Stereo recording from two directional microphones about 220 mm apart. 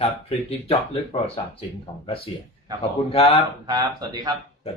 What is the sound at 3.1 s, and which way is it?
Speech, 25° left (ahead or behind).